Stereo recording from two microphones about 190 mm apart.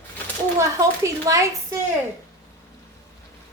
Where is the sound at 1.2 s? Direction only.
15° right (ahead or behind).